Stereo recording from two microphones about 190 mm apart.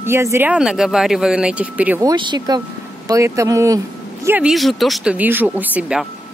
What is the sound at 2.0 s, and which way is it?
A woman's voice, 20° right (ahead or behind).